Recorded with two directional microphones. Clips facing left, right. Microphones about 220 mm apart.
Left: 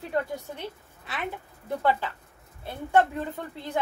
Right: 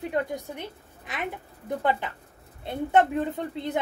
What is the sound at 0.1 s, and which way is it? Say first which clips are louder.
A woman's voice: left 3 dB; 15° right (ahead or behind).